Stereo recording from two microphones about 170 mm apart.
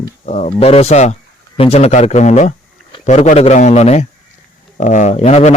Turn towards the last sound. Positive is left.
turn(degrees=40)  # may be behind; listen again after turning